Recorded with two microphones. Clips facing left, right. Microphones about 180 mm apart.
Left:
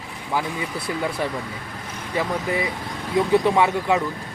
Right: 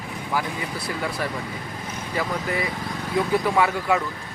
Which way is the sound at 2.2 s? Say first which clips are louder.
Left 3 dB; 20° left (ahead or behind).